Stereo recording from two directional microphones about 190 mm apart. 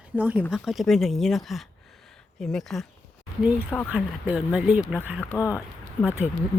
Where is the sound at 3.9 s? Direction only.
5° right (ahead or behind).